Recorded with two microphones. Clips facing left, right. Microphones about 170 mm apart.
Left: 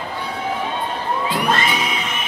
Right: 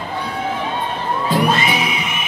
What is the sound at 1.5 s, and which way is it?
Music, 10° right (ahead or behind).